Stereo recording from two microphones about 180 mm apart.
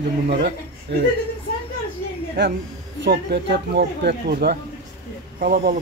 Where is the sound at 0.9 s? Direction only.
70° right (ahead or behind).